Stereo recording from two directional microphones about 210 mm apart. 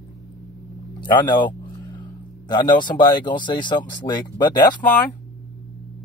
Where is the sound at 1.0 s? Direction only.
20° left (ahead or behind).